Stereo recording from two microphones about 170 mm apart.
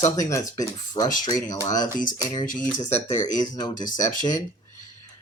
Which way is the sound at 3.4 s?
25° left (ahead or behind).